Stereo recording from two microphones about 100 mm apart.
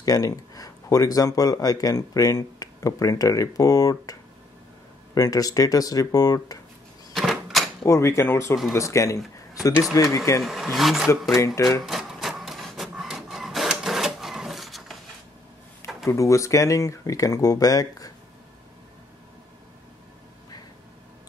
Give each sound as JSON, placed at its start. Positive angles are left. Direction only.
{"t": 0.0, "sound": "speech", "side_deg": 35}
{"t": 7.2, "sound": "typewriter", "side_deg": 0}
{"t": 7.8, "sound": "speech", "side_deg": 30}
{"t": 9.5, "sound": "a sound", "side_deg": 35}
{"t": 10.1, "sound": "speech", "side_deg": 30}
{"t": 10.4, "sound": "speech", "side_deg": 0}
{"t": 11.3, "sound": "speech", "side_deg": 30}
{"t": 11.8, "sound": "printer", "side_deg": -5}
{"t": 16.1, "sound": "speech", "side_deg": 30}